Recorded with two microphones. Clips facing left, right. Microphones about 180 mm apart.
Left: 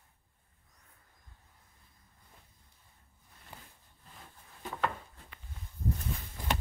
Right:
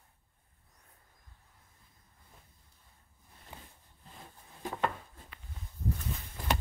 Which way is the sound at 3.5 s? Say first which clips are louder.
Right 1 dB; 20° right (ahead or behind).